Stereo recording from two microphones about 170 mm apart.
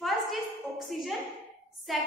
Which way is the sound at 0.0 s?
Centre (ahead or behind).